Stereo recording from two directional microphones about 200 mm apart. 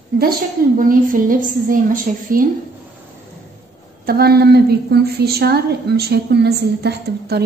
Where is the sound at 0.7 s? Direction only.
45° right (ahead or behind).